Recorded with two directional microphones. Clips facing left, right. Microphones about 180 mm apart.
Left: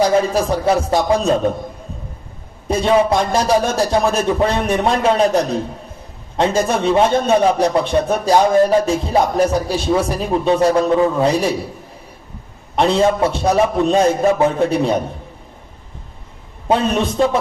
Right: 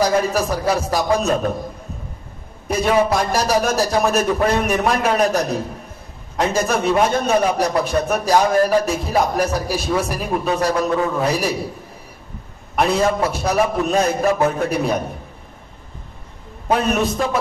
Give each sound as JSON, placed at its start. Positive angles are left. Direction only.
{"t": 0.0, "sound": "a man's voice", "side_deg": 30}
{"t": 2.7, "sound": "a man's voice", "side_deg": 30}
{"t": 12.7, "sound": "a man's voice", "side_deg": 30}
{"t": 16.6, "sound": "a man's voice", "side_deg": 30}